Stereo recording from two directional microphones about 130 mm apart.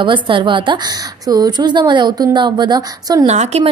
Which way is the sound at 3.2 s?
55° right (ahead or behind).